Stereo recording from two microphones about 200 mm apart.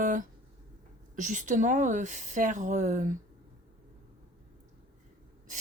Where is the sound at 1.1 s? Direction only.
40° right (ahead or behind).